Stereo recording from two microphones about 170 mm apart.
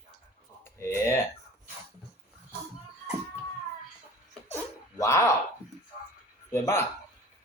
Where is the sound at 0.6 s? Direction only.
15° left (ahead or behind).